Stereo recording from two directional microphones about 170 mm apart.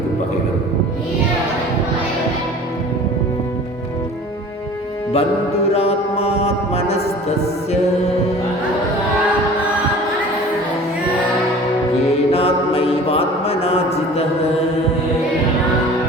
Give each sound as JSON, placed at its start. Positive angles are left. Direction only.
{"t": 5.1, "sound": "mantra", "side_deg": 35}
{"t": 12.3, "sound": "mantra", "side_deg": 35}